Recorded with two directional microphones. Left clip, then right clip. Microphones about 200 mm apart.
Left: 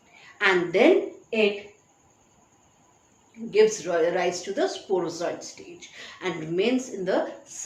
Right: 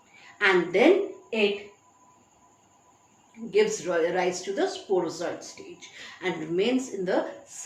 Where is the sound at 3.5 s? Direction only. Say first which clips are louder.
Left 3 dB; 20° left (ahead or behind).